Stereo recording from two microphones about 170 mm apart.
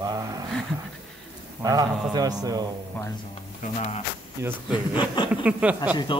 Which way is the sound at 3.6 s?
40° left (ahead or behind).